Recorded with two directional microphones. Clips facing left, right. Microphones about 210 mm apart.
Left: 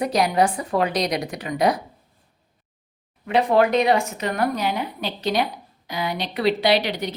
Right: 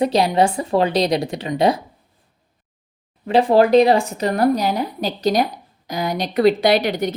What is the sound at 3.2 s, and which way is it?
Speech, 30° right (ahead or behind).